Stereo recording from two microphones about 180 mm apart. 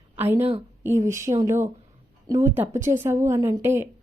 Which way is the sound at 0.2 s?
10° right (ahead or behind).